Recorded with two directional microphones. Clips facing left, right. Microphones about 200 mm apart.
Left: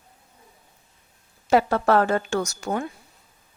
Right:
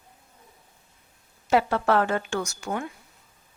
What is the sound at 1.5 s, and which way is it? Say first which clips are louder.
Speech: left 3 dB; 40° left (ahead or behind).